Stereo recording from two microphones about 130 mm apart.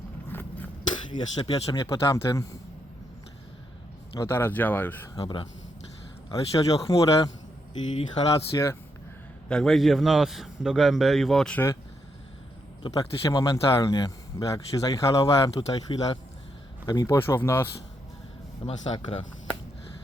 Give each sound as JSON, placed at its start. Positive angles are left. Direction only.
{"t": 0.3, "sound": "a sound", "side_deg": 15}
{"t": 1.1, "sound": "speech", "side_deg": 35}
{"t": 4.2, "sound": "speech", "side_deg": 15}
{"t": 5.1, "sound": "speech", "side_deg": 40}
{"t": 6.3, "sound": "speech", "side_deg": 25}
{"t": 7.7, "sound": "speech", "side_deg": 40}
{"t": 9.5, "sound": "a man's voice", "side_deg": 5}
{"t": 13.0, "sound": "speech", "side_deg": 25}
{"t": 15.9, "sound": "speech", "side_deg": 40}
{"t": 16.8, "sound": "speech", "side_deg": 30}
{"t": 17.2, "sound": "speech", "side_deg": 20}
{"t": 18.6, "sound": "speech", "side_deg": 35}